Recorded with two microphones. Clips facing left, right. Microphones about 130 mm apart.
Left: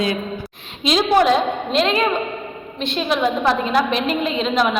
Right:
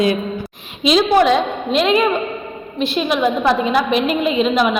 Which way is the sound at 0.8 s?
Centre (ahead or behind).